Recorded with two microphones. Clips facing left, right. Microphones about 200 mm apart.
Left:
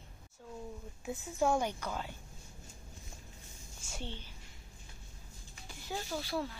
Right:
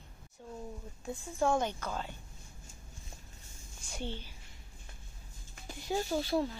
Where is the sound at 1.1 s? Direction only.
10° left (ahead or behind).